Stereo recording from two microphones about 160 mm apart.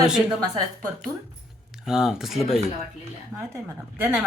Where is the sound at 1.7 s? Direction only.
5° right (ahead or behind).